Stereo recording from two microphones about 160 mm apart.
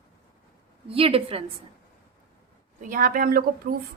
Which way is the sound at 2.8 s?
60° right (ahead or behind).